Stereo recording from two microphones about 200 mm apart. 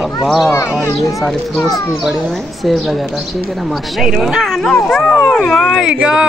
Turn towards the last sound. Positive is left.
turn(degrees=-5)  # may be behind; listen again after turning